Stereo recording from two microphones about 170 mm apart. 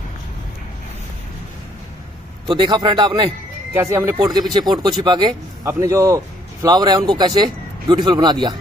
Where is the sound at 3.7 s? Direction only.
15° right (ahead or behind).